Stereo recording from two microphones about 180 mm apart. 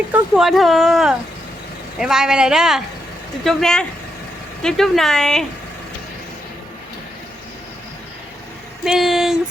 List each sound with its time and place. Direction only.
0.1 s speech: centre (ahead or behind)
8.8 s speech: centre (ahead or behind)